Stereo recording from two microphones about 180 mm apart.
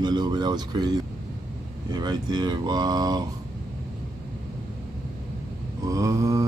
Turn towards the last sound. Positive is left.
turn(degrees=-15)  # may be behind; listen again after turning